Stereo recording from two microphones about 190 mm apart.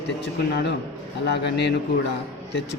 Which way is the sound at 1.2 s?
65° left (ahead or behind).